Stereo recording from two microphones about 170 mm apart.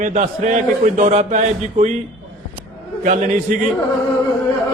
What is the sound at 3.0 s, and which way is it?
Speech, 45° right (ahead or behind).